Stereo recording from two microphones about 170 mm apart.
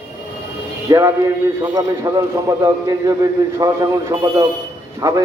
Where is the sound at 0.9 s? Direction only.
15° right (ahead or behind).